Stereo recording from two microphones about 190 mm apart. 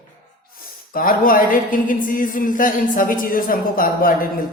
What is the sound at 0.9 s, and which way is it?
Speech, 50° left (ahead or behind).